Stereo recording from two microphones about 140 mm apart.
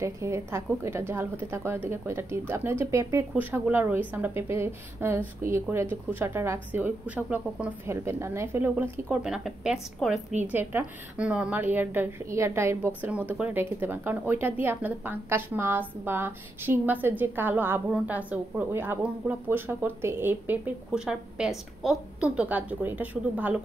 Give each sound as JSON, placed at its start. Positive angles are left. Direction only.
{"t": 0.0, "sound": "speech", "side_deg": -20}
{"t": 10.4, "sound": "speech", "side_deg": -15}